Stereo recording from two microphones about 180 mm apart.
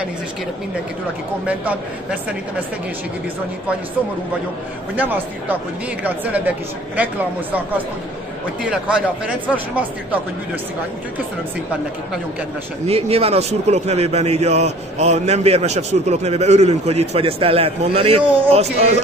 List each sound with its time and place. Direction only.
1.4 s speech: 10° right (ahead or behind)
4.9 s speech: 10° right (ahead or behind)
8.6 s speech: 5° right (ahead or behind)
12.8 s a man's voice: 35° right (ahead or behind)